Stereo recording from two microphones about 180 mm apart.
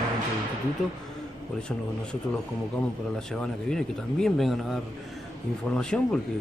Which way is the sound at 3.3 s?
5° left (ahead or behind).